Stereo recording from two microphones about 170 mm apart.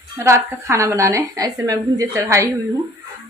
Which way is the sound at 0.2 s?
15° right (ahead or behind).